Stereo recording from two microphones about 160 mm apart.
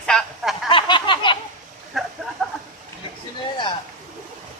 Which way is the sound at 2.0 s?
Centre (ahead or behind).